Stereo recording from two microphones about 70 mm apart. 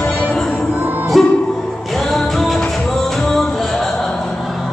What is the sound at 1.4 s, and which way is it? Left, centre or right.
Music, centre.